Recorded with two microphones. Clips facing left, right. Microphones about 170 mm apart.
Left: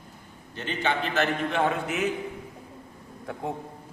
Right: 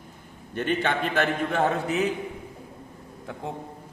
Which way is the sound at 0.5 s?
55° right (ahead or behind).